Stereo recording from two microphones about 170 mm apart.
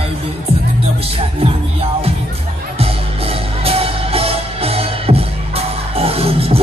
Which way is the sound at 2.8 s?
35° right (ahead or behind).